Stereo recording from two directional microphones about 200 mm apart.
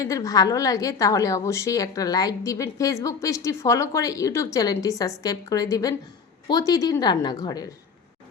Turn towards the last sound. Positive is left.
turn(degrees=20)  # may be behind; listen again after turning